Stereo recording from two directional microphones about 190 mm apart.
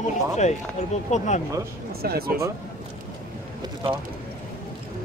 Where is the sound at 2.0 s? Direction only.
55° right (ahead or behind).